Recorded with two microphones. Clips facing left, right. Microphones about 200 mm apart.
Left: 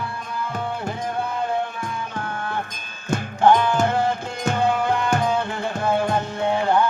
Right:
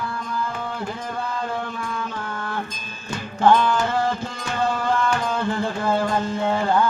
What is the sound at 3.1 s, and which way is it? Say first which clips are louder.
Music: left 1 dB; 55° left (ahead or behind).